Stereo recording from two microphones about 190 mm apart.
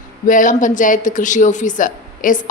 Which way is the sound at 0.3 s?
45° left (ahead or behind).